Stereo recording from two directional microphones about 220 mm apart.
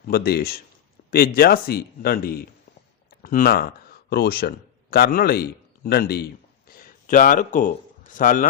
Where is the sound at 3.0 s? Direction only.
40° left (ahead or behind).